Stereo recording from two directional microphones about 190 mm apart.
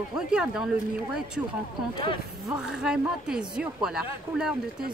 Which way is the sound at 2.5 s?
5° right (ahead or behind).